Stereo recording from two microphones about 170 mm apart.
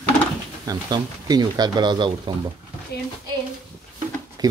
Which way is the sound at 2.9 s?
70° left (ahead or behind).